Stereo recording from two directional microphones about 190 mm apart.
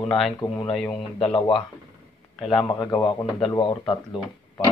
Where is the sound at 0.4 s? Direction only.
25° left (ahead or behind).